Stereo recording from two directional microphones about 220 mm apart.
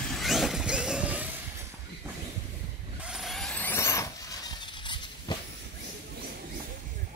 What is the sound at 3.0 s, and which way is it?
Vehicle, 5° right (ahead or behind).